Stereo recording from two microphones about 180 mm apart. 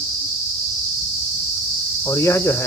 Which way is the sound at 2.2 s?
15° left (ahead or behind).